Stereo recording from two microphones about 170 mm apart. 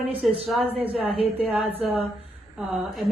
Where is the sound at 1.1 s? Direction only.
35° left (ahead or behind).